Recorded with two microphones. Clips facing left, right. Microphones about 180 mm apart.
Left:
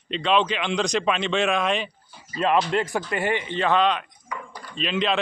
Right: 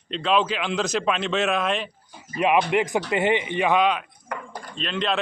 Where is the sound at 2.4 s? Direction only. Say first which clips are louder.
Right 1 dB; 15° right (ahead or behind).